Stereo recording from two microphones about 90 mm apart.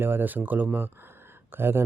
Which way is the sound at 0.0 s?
25° right (ahead or behind).